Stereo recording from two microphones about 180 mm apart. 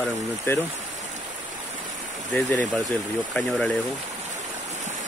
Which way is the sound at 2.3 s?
5° left (ahead or behind).